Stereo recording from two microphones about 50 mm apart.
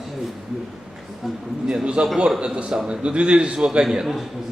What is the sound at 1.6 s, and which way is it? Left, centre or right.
A man's voice, right.